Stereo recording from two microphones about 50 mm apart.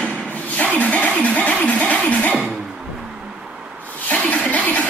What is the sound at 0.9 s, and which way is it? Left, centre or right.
Music, left.